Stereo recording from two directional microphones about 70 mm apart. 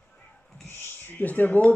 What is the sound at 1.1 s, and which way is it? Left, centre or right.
Speech, left.